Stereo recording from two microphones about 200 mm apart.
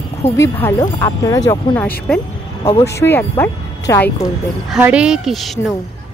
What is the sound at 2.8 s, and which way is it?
Speech, 15° left (ahead or behind).